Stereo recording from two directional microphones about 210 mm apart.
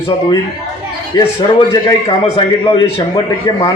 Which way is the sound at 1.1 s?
20° left (ahead or behind).